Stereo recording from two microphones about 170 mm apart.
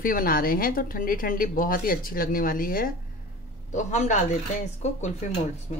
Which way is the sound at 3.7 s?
45° left (ahead or behind).